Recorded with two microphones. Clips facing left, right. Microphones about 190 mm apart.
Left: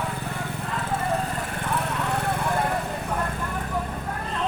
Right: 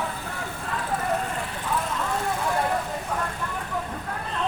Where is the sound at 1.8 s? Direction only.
65° left (ahead or behind).